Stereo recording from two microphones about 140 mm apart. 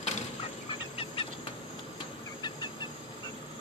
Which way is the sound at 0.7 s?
40° left (ahead or behind).